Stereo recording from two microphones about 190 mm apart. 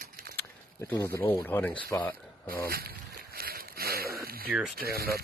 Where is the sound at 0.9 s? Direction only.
15° left (ahead or behind).